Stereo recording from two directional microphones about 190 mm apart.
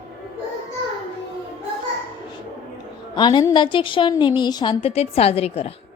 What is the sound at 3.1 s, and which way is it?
A woman's voice, 25° left (ahead or behind).